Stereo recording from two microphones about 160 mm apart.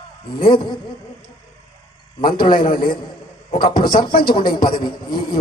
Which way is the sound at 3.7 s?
30° left (ahead or behind).